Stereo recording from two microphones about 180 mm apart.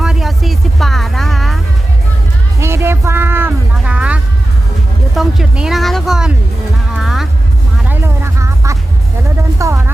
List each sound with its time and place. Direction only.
0.0 s vehicle: centre (ahead or behind)
2.6 s music: 15° right (ahead or behind)
7.9 s music: 15° right (ahead or behind)
9.6 s a sound: 15° right (ahead or behind)